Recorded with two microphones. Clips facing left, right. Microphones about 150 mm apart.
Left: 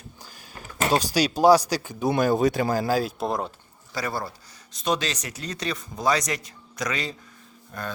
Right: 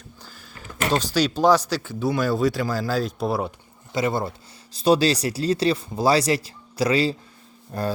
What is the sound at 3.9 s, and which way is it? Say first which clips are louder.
Speech: right 6 dB; 25° right (ahead or behind).